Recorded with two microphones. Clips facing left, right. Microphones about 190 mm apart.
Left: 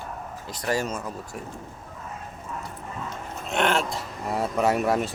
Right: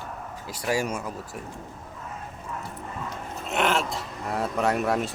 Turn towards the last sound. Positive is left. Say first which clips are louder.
# left 2 dB
turn(degrees=0)  # may be behind; listen again after turning